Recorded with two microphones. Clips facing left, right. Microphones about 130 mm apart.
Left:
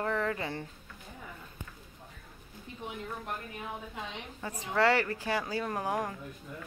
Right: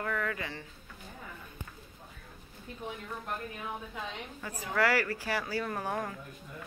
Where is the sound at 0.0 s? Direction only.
30° left (ahead or behind).